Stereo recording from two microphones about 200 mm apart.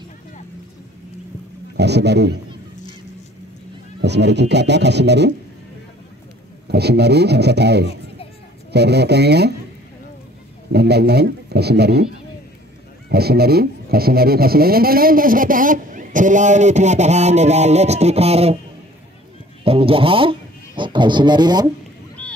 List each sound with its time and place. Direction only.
1.8 s speech: 55° right (ahead or behind)
4.0 s speech: 60° right (ahead or behind)
6.7 s speech: 55° right (ahead or behind)
10.7 s speech: 55° right (ahead or behind)
13.1 s speech: 50° right (ahead or behind); by 18.6 s 30° right (ahead or behind)
19.6 s speech: 30° right (ahead or behind)
22.2 s vehicle: 5° left (ahead or behind)